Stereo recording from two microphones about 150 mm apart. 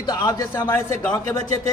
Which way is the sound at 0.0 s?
30° left (ahead or behind).